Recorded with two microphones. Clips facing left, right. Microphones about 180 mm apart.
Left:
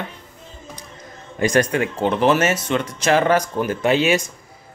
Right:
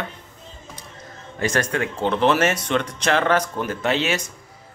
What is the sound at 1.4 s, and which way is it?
Speech, 15° left (ahead or behind).